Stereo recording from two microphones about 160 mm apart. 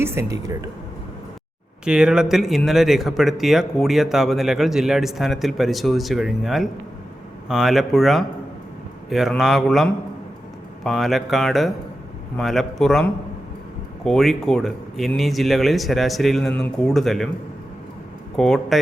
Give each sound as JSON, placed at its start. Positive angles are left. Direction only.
{"t": 0.0, "sound": "speech", "side_deg": -15}
{"t": 1.8, "sound": "speech", "side_deg": -5}
{"t": 18.3, "sound": "speech", "side_deg": 0}